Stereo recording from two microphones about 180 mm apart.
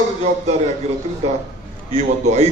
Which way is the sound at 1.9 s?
40° right (ahead or behind).